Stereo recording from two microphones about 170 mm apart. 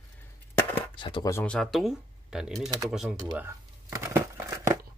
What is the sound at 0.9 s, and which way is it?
Speech, 30° left (ahead or behind).